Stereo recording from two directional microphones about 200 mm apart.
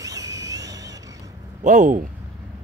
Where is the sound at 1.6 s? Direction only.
40° right (ahead or behind).